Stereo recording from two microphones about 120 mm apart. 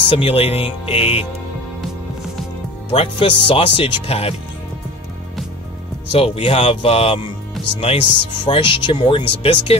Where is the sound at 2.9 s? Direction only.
50° left (ahead or behind).